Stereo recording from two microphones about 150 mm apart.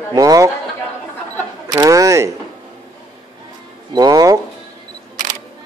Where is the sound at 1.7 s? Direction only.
20° right (ahead or behind).